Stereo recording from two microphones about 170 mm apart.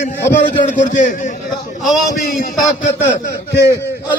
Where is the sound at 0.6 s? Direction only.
45° left (ahead or behind).